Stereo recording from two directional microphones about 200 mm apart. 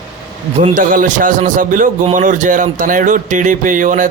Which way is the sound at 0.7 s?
45° right (ahead or behind).